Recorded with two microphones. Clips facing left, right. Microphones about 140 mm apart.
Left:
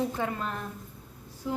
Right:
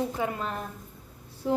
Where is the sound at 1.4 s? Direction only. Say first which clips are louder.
Right 6 dB; 45° right (ahead or behind).